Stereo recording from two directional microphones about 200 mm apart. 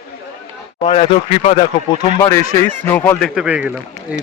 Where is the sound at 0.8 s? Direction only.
30° left (ahead or behind); by 4.2 s 5° right (ahead or behind).